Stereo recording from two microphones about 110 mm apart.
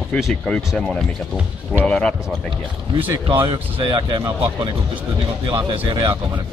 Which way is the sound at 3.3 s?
50° right (ahead or behind).